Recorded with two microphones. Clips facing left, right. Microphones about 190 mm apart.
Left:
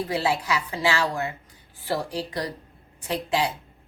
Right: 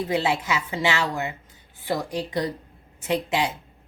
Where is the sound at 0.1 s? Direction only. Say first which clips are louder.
Right 2 dB; 20° right (ahead or behind).